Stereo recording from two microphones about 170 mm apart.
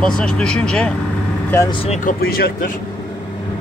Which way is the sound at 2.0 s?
55° left (ahead or behind).